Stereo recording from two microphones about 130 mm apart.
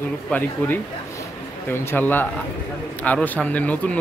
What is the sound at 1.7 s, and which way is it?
Speech, 15° left (ahead or behind).